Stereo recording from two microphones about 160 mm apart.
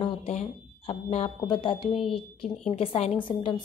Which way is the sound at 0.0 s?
40° left (ahead or behind).